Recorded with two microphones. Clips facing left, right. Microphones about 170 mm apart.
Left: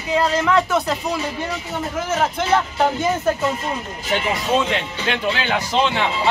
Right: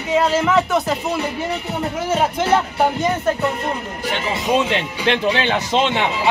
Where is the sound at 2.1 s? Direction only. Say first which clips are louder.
Right 2 dB; 10° right (ahead or behind).